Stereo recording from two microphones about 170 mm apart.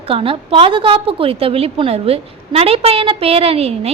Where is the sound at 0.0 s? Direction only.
35° right (ahead or behind).